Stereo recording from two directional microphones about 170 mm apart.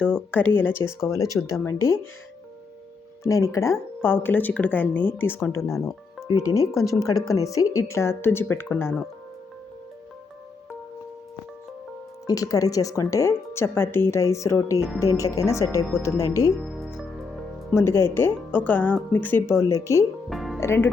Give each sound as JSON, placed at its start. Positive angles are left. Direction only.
{"t": 0.0, "sound": "speech", "side_deg": 10}
{"t": 3.2, "sound": "speech", "side_deg": 20}
{"t": 12.3, "sound": "speech", "side_deg": 20}
{"t": 16.5, "sound": "music", "side_deg": 0}
{"t": 17.7, "sound": "speech", "side_deg": 15}
{"t": 20.3, "sound": "music", "side_deg": 0}
{"t": 20.6, "sound": "speech", "side_deg": 15}